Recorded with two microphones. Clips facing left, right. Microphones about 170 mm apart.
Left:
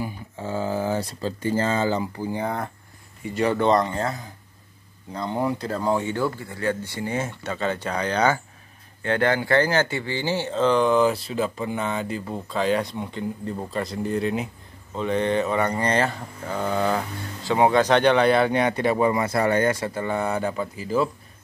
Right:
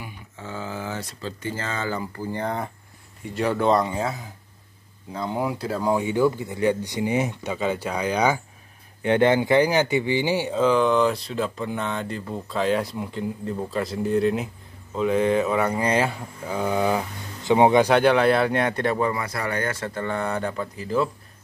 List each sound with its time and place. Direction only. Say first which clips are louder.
0.0 s speech: left 7 dB; 35° left (ahead or behind)
2.1 s a man's voice: left 1 dB; 10° left (ahead or behind)
19.0 s speech: left 5 dB; 25° left (ahead or behind); by 21.1 s 5° left (ahead or behind)